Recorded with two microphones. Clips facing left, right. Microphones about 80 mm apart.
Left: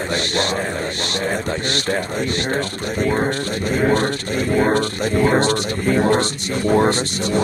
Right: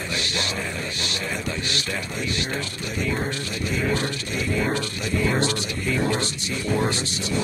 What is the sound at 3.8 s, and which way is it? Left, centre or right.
A man's voice, left.